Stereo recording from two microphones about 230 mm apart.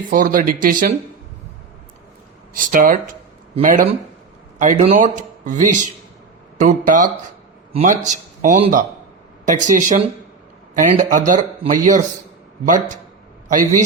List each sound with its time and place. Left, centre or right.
0.1 s speech: right
2.5 s speech: right
13.5 s speech: right